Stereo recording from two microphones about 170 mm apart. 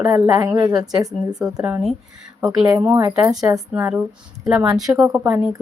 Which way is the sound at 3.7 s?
10° right (ahead or behind).